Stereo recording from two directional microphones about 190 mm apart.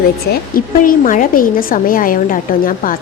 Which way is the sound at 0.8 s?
45° left (ahead or behind).